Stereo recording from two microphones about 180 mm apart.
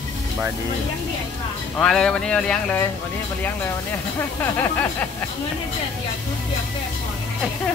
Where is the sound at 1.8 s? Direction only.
5° left (ahead or behind).